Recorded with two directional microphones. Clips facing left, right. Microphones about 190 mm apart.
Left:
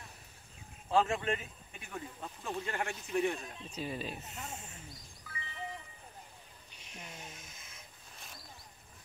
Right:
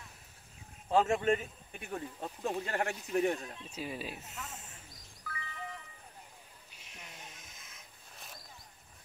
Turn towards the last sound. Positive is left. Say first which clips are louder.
# left 2 dB
turn(degrees=0)  # may be behind; listen again after turning